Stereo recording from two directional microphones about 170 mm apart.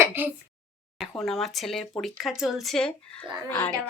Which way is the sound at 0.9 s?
Centre (ahead or behind).